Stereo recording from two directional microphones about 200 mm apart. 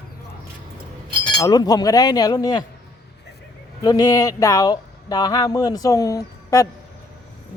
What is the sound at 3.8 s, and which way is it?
Speech, 20° left (ahead or behind).